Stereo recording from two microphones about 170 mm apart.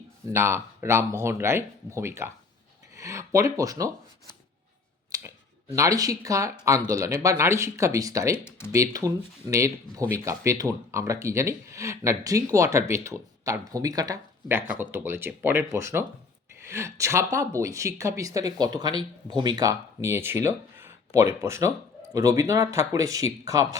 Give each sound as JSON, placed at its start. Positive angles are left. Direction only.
{"t": 0.3, "sound": "speech", "side_deg": -15}
{"t": 5.1, "sound": "a sound", "side_deg": -20}
{"t": 5.7, "sound": "speech", "side_deg": -20}
{"t": 8.4, "sound": "speech", "side_deg": 15}
{"t": 8.7, "sound": "speech", "side_deg": -20}